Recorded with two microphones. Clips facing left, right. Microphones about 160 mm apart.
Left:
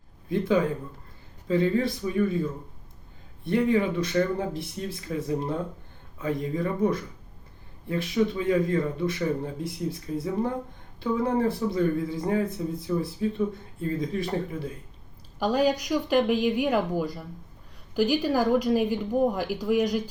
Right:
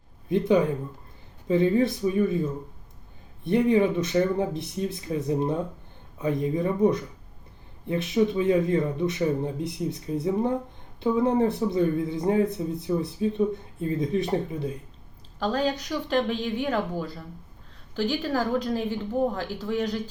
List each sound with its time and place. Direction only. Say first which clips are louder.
0.3 s speech: right 2 dB; 20° right (ahead or behind)
15.4 s speech: left 3 dB; 10° left (ahead or behind)